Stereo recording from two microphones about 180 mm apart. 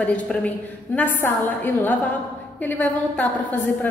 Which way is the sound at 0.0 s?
5° left (ahead or behind).